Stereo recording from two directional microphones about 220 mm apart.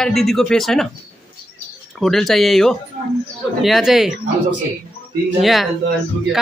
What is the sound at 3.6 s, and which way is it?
Speech, centre (ahead or behind).